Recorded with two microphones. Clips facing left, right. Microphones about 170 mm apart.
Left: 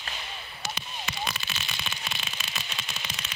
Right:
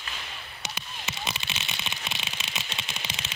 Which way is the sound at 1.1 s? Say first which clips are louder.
Even; 20° right (ahead or behind).